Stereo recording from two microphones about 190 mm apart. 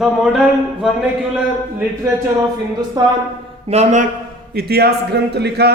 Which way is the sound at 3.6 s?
35° right (ahead or behind).